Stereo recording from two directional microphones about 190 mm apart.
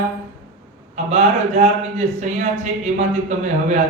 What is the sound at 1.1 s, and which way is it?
Speech, 35° right (ahead or behind).